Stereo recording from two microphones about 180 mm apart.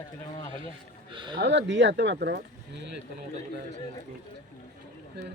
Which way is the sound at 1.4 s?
75° right (ahead or behind).